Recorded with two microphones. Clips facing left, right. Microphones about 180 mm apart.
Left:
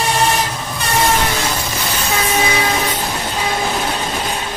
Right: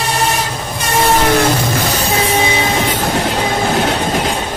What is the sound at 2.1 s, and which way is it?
Train, 30° right (ahead or behind).